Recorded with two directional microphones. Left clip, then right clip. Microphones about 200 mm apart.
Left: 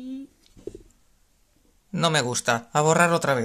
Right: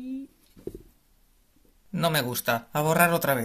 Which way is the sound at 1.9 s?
10° left (ahead or behind).